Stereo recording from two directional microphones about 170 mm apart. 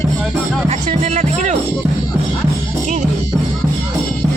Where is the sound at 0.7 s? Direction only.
40° right (ahead or behind).